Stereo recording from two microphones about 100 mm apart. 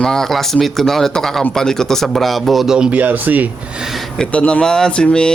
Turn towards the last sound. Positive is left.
turn(degrees=10)  # may be behind; listen again after turning